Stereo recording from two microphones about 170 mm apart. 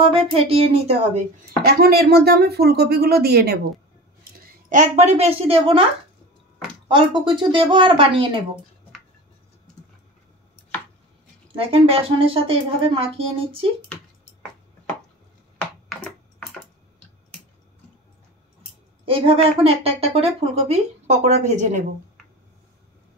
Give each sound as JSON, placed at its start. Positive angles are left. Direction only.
{"t": 0.0, "sound": "speech", "side_deg": -35}
{"t": 1.6, "sound": "a woman's voice", "side_deg": -65}
{"t": 4.2, "sound": "a woman's voice", "side_deg": -50}
{"t": 6.9, "sound": "speech", "side_deg": -30}
{"t": 11.5, "sound": "speech", "side_deg": -35}
{"t": 15.6, "sound": "a sound", "side_deg": 5}
{"t": 19.0, "sound": "speech", "side_deg": -30}